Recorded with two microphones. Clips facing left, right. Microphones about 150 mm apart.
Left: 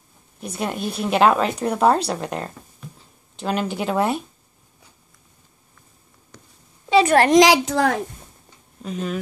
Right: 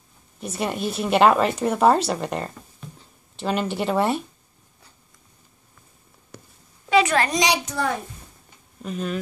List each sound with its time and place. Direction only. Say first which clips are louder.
0.4 s a woman's voice: even; centre (ahead or behind)
6.3 s a sound: right 4 dB; 5° right (ahead or behind)
7.1 s a child's voice: left 8 dB; 75° left (ahead or behind)
8.8 s a woman's voice: left 1 dB; centre (ahead or behind)